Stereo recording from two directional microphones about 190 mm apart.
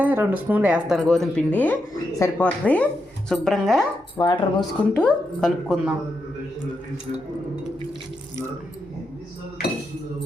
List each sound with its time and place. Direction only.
0.0 s speech: 10° right (ahead or behind)
4.2 s speech: 20° left (ahead or behind)
4.9 s speech: 5° left (ahead or behind)